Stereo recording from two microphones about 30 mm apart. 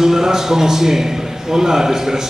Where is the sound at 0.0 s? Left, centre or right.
Centre.